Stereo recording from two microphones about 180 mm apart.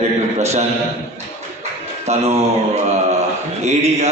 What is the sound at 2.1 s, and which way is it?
Speech, 40° right (ahead or behind).